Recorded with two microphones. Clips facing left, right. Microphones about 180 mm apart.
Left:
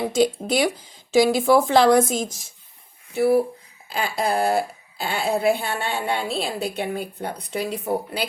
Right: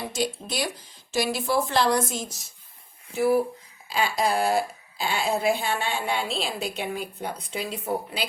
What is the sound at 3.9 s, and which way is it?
Speech, 55° left (ahead or behind).